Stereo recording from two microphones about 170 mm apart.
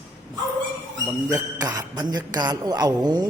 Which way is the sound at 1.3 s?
20° right (ahead or behind).